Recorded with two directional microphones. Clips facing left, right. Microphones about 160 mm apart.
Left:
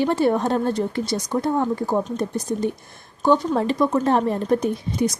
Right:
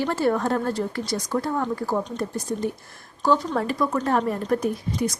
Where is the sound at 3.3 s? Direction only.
25° left (ahead or behind).